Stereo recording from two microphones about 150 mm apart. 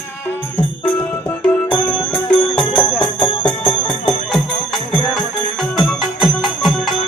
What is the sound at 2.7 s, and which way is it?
Music, 35° left (ahead or behind).